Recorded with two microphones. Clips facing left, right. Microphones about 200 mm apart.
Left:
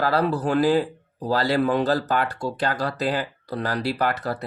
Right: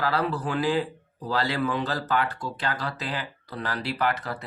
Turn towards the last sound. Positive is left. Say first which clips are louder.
# left 3 dB
turn(degrees=40)  # may be behind; listen again after turning